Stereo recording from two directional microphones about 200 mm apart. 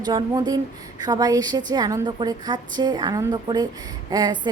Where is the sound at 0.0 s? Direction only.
20° right (ahead or behind).